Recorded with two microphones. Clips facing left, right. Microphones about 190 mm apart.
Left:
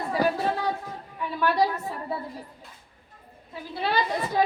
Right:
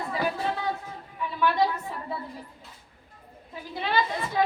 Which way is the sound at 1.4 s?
40° left (ahead or behind).